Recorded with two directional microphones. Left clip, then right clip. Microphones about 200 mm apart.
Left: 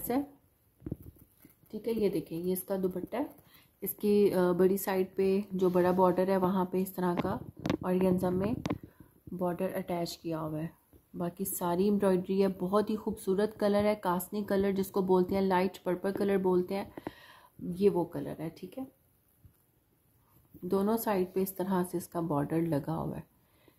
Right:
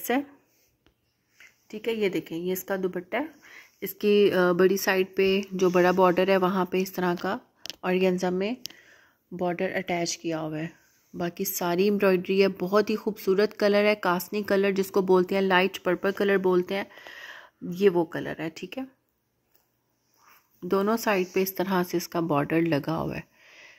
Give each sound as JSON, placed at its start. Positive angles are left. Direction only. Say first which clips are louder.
{"t": 1.7, "sound": "speech", "louder": "right 4 dB", "side_deg": -20}
{"t": 20.6, "sound": "speech", "louder": "right 6 dB", "side_deg": -25}